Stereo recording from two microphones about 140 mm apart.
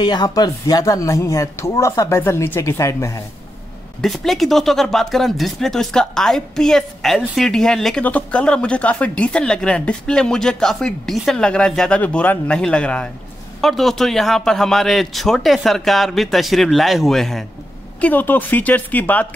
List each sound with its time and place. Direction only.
0.0 s speech: 30° left (ahead or behind)
4.0 s speech: centre (ahead or behind)
18.0 s speech: 15° left (ahead or behind)